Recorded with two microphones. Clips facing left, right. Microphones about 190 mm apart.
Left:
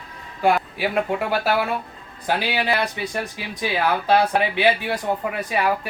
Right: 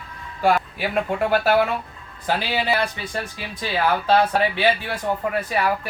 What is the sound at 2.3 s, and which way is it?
Speech, 15° left (ahead or behind).